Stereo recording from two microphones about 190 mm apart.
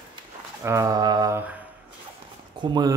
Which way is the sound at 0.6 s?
15° right (ahead or behind).